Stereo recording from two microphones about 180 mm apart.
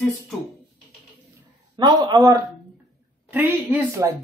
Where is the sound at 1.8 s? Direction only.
20° right (ahead or behind).